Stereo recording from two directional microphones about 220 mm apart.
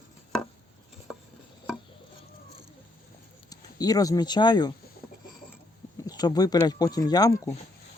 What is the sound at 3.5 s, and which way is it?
Speech, 15° left (ahead or behind).